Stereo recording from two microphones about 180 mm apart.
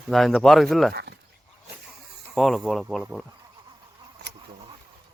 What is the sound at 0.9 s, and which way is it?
Speech, 65° right (ahead or behind).